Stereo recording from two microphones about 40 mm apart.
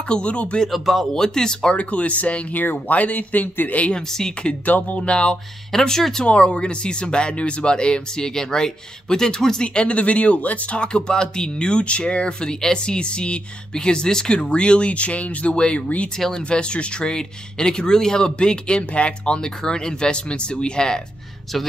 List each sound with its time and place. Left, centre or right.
0.1 s speech: left
0.7 s speech: centre
1.1 s speech: centre
1.8 s speech: left
3.9 s speech: centre
4.6 s speech: left
5.0 s speech: left
5.7 s speech: centre
6.2 s speech: left
16.2 s speech: centre
16.4 s speech: left